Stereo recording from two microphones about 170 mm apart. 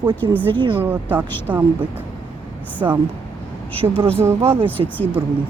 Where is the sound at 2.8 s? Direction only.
20° right (ahead or behind).